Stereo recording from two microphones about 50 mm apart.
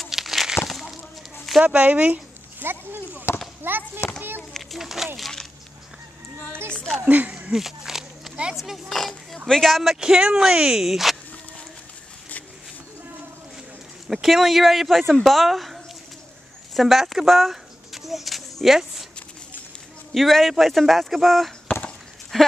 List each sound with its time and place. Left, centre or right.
0.1 s a sound: centre
1.6 s speech: right
2.6 s speech: right
4.7 s speech: centre
6.7 s speech: centre
7.1 s speech: right
7.5 s a sound: centre
8.8 s speech: centre
9.9 s speech: centre
14.0 s speech: centre
16.7 s a sound: centre
20.2 s speech: centre